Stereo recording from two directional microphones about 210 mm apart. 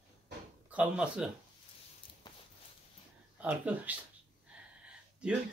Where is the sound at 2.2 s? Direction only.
20° left (ahead or behind).